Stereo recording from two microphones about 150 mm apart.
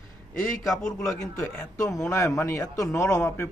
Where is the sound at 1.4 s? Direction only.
20° left (ahead or behind).